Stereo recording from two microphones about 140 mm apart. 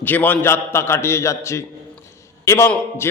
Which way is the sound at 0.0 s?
15° left (ahead or behind).